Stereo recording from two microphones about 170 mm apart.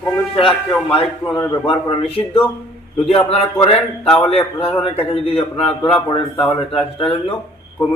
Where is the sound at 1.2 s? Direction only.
15° left (ahead or behind).